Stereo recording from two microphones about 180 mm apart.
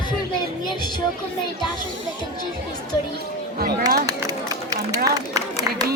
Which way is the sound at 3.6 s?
55° right (ahead or behind).